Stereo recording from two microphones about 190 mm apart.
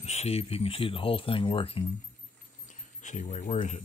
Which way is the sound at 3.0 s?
40° left (ahead or behind).